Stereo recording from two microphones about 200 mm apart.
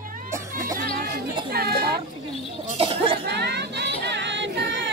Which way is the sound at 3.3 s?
55° right (ahead or behind).